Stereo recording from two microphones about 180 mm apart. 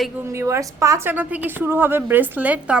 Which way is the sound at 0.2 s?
15° right (ahead or behind).